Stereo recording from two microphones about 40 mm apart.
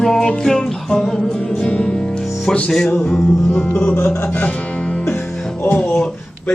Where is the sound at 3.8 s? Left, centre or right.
Left.